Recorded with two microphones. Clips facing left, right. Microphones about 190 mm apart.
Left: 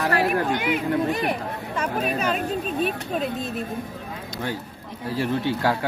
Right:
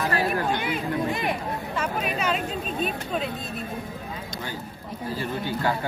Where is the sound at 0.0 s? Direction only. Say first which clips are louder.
Left 3 dB; 70° left (ahead or behind).